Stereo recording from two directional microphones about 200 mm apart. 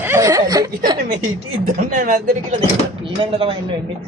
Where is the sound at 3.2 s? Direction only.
25° right (ahead or behind).